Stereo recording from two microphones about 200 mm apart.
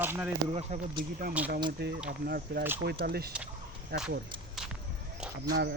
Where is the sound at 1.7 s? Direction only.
55° right (ahead or behind).